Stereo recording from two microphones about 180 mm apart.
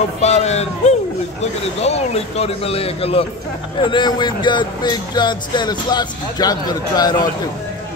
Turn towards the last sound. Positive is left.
turn(degrees=20)  # may be behind; listen again after turning